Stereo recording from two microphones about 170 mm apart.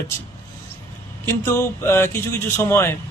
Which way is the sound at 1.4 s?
15° left (ahead or behind).